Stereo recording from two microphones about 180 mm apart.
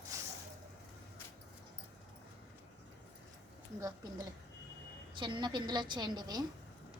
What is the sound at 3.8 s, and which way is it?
A woman's voice, 20° right (ahead or behind).